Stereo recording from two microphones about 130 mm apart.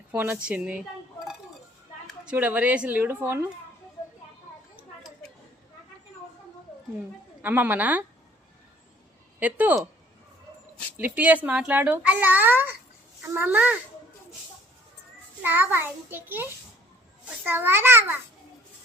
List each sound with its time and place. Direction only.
0.1 s a child's voice: 15° right (ahead or behind)
2.2 s a child's voice: 10° right (ahead or behind)
7.4 s a child's voice: 15° right (ahead or behind)
9.4 s a child's voice: 10° right (ahead or behind)
10.9 s a child's voice: 15° right (ahead or behind)
15.4 s a child's voice: 15° right (ahead or behind)